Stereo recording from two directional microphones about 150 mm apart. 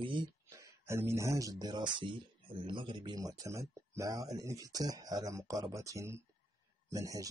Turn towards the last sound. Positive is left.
turn(degrees=-20)  # may be behind; listen again after turning